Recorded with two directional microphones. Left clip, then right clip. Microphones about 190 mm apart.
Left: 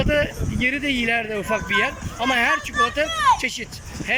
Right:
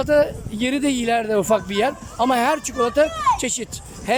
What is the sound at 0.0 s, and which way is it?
Speech, 20° right (ahead or behind).